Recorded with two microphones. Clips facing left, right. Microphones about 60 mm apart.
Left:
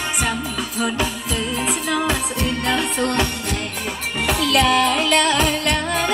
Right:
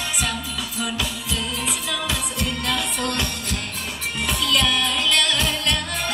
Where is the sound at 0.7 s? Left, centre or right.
Left.